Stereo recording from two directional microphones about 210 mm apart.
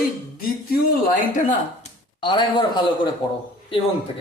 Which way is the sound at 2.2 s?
20° left (ahead or behind).